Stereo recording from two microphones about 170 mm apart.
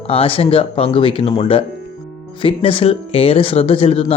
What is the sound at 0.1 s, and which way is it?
Speech, 35° left (ahead or behind).